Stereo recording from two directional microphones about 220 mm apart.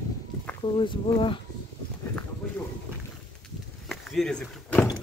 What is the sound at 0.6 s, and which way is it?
Speech, 20° left (ahead or behind).